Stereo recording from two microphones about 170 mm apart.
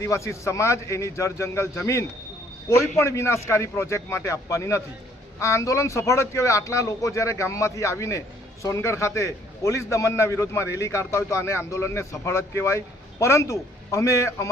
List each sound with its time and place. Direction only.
0.0 s a man's voice: 15° left (ahead or behind)